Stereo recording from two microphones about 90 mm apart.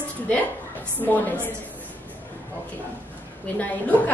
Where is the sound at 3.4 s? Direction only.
20° left (ahead or behind).